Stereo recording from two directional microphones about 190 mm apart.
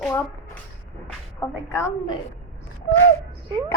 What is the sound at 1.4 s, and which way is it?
Speech, 15° left (ahead or behind).